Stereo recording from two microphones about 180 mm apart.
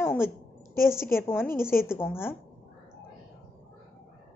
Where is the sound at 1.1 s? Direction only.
15° left (ahead or behind).